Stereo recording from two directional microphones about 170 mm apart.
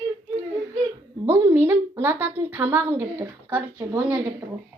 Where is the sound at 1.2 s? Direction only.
15° right (ahead or behind).